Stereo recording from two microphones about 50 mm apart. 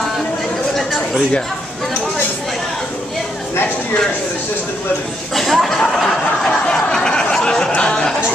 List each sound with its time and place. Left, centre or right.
5.3 s speech: centre
5.9 s a sound: centre
7.7 s speech: centre